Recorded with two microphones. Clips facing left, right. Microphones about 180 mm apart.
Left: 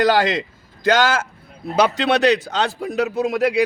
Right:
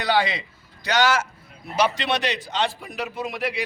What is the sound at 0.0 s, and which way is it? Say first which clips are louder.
Speech: left 6 dB; 90° left.